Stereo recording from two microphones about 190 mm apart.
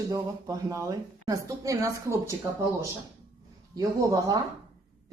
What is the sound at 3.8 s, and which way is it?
Speech, 20° right (ahead or behind).